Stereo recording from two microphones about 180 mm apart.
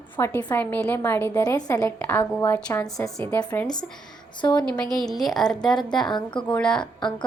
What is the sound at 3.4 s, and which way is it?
A woman's voice, 20° left (ahead or behind).